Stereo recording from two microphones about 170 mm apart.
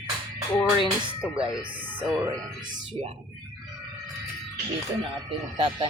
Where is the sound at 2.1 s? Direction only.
20° right (ahead or behind).